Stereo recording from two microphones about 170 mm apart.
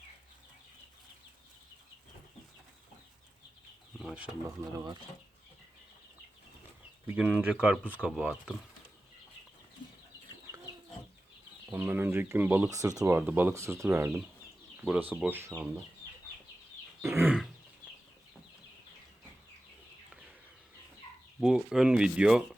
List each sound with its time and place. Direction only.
3.9 s chicken: 5° right (ahead or behind)
4.4 s speech: 25° right (ahead or behind)
7.2 s speech: 10° right (ahead or behind)
11.7 s speech: 15° right (ahead or behind)
17.0 s wild animals: 15° right (ahead or behind)
21.4 s speech: 5° right (ahead or behind)